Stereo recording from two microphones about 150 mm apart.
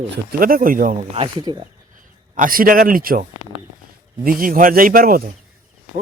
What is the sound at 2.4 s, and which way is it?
Speech, 70° right (ahead or behind).